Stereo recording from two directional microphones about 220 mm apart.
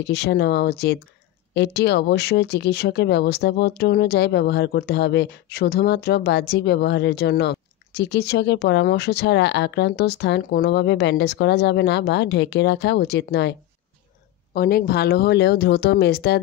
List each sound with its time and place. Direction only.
0.0 s speech: 50° left (ahead or behind)